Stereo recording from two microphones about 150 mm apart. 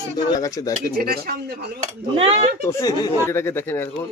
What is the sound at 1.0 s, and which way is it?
Speech, 90° right.